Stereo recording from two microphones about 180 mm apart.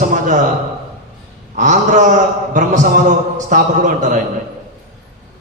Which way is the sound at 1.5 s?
45° right (ahead or behind).